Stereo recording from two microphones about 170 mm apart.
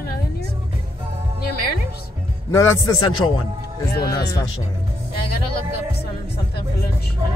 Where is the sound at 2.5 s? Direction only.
15° left (ahead or behind).